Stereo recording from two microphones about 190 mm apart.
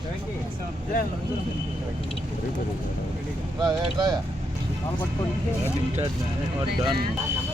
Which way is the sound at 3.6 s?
20° right (ahead or behind).